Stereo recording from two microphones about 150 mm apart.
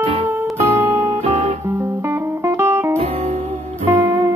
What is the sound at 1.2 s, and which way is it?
Guitar, 50° right (ahead or behind).